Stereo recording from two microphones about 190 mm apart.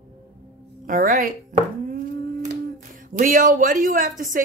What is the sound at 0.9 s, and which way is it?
Speech, 45° right (ahead or behind).